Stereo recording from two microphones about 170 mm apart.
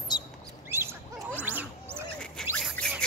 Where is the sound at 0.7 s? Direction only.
15° right (ahead or behind).